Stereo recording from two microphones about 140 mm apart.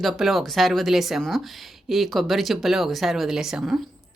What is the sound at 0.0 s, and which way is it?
Speech, centre (ahead or behind).